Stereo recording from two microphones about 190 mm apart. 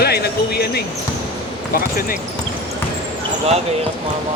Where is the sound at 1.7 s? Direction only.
50° left (ahead or behind).